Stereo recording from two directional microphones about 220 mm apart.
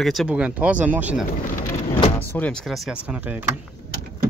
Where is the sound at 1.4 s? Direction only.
35° left (ahead or behind).